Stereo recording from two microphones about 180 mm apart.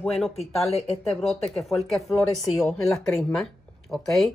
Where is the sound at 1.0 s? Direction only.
Centre (ahead or behind).